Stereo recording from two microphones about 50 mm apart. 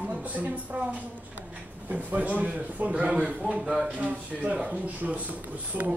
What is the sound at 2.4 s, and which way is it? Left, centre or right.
Speech, right.